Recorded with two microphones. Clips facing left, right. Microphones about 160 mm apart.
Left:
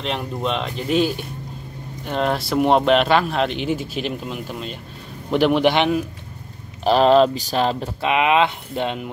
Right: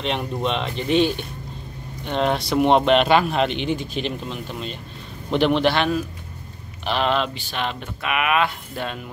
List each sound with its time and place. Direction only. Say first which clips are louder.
0.0 s a man's voice: even; centre (ahead or behind); by 6.0 s 15° left (ahead or behind)
6.8 s speech: left 8 dB; 40° left (ahead or behind); by 9.1 s 20° left (ahead or behind)